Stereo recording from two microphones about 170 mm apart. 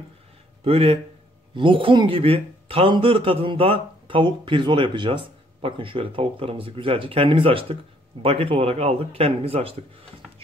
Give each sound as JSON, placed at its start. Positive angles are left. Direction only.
{"t": 0.7, "sound": "speech", "side_deg": -35}